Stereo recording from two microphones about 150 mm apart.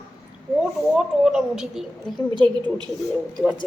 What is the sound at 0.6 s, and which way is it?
A woman's voice, 5° right (ahead or behind).